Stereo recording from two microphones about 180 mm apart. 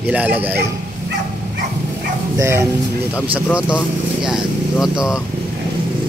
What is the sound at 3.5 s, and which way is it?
Speech, 5° right (ahead or behind).